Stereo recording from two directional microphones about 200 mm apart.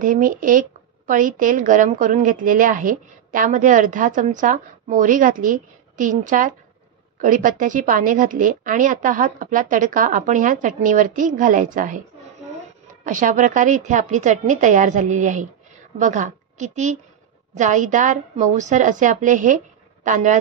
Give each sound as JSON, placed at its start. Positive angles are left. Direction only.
{"t": 0.0, "sound": "a woman's voice", "side_deg": -40}
{"t": 13.0, "sound": "a woman's voice", "side_deg": -40}